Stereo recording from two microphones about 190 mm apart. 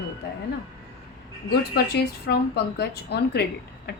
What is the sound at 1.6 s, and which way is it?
A woman's voice, 60° left (ahead or behind).